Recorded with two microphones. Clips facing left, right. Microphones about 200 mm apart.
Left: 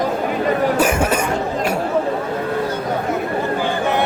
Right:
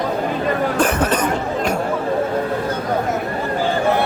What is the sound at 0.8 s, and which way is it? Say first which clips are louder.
Cough: left 1 dB; 10° left (ahead or behind).